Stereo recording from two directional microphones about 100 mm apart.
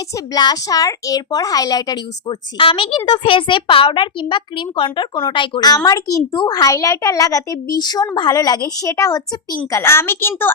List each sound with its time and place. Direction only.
0.3 s a child's voice: 40° left (ahead or behind)
2.6 s a child's voice: 60° left (ahead or behind); by 10.5 s 25° left (ahead or behind)